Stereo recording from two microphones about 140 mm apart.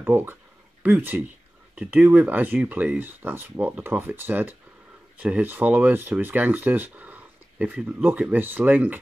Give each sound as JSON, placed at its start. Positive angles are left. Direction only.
{"t": 0.0, "sound": "speech", "side_deg": -15}